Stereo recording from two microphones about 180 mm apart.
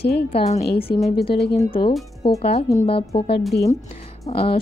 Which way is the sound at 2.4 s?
35° left (ahead or behind).